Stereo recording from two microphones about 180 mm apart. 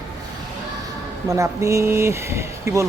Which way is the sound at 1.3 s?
15° right (ahead or behind).